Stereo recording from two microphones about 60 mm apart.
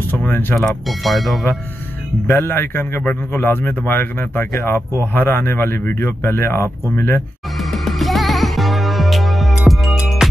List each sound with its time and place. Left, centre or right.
0.1 s speech: left
0.6 s speech: centre
2.2 s speech: left
7.7 s music: centre